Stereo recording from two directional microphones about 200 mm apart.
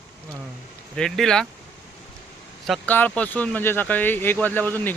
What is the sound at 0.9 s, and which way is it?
Speech, 5° left (ahead or behind).